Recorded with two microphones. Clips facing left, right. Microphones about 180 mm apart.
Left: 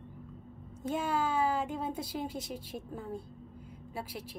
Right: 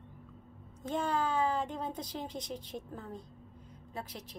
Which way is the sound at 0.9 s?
5° left (ahead or behind).